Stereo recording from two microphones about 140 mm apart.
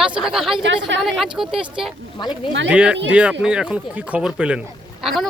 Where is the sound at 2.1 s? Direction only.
30° left (ahead or behind).